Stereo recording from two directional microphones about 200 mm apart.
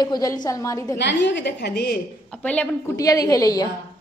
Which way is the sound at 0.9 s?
60° left (ahead or behind).